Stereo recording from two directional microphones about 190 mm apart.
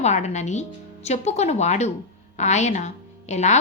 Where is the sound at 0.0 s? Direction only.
35° left (ahead or behind).